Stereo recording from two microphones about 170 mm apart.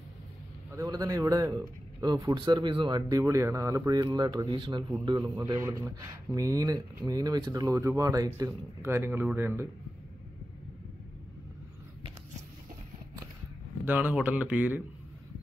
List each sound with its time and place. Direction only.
0.7 s speech: 20° right (ahead or behind)
13.8 s speech: 10° right (ahead or behind)